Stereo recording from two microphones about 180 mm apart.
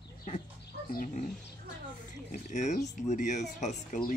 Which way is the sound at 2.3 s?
40° left (ahead or behind).